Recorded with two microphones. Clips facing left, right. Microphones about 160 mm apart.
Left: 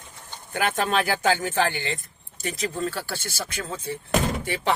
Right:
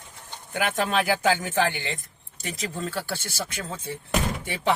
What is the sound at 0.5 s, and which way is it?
Speech, 10° right (ahead or behind).